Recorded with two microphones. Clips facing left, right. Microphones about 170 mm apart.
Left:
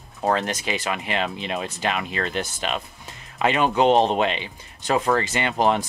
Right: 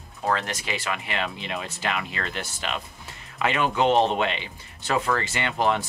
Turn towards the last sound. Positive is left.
turn(degrees=20)  # may be behind; listen again after turning